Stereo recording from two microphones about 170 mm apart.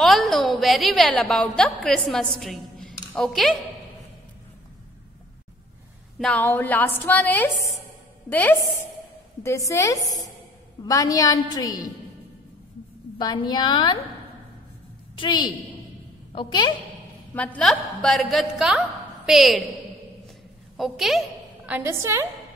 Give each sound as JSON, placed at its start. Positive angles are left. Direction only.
{"t": 0.0, "sound": "a woman's voice", "side_deg": 0}
{"t": 6.1, "sound": "a woman's voice", "side_deg": 5}
{"t": 13.2, "sound": "a woman's voice", "side_deg": 25}
{"t": 15.1, "sound": "a woman's voice", "side_deg": 25}
{"t": 17.3, "sound": "a woman's voice", "side_deg": 10}
{"t": 20.7, "sound": "a woman's voice", "side_deg": 0}